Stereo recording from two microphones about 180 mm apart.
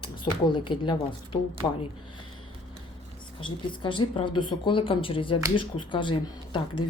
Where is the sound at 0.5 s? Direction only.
25° left (ahead or behind).